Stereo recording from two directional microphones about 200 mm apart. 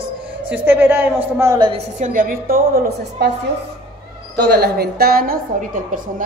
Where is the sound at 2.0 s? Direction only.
45° right (ahead or behind).